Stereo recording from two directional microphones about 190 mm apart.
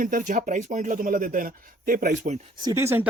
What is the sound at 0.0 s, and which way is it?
A man's voice, 45° right (ahead or behind).